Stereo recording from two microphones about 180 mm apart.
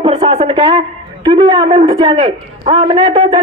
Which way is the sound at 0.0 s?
35° right (ahead or behind).